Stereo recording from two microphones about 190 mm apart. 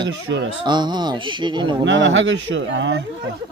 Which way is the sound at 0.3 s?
75° right (ahead or behind).